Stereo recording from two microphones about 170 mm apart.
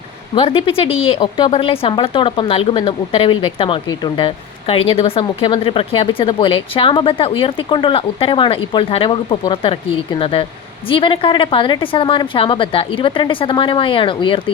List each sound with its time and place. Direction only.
0.3 s speech: 30° left (ahead or behind)